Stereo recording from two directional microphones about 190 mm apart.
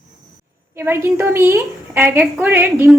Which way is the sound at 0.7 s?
15° right (ahead or behind).